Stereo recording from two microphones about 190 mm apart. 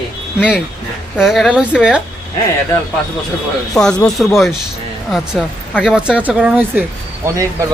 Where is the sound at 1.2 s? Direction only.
Centre (ahead or behind).